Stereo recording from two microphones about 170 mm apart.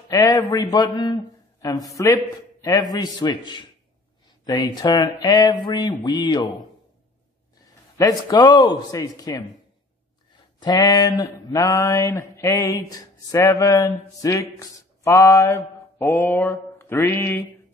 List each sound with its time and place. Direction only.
0.1 s speech: 20° left (ahead or behind)
8.0 s speech: 20° left (ahead or behind)
10.6 s mantra: 25° left (ahead or behind)